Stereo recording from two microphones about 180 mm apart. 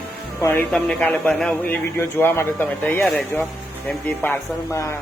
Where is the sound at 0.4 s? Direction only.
10° left (ahead or behind).